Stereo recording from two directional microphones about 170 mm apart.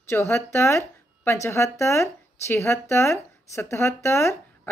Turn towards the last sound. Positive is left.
turn(degrees=15)  # may be behind; listen again after turning